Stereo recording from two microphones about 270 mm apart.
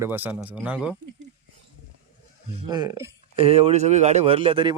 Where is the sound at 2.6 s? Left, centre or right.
Centre.